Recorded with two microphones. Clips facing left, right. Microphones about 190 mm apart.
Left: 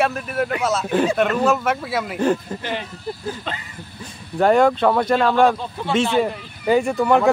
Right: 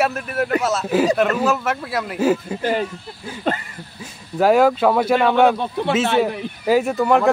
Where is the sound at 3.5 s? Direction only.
45° right (ahead or behind).